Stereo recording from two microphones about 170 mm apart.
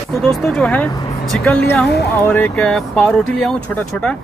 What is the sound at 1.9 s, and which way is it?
Speech, 75° left (ahead or behind).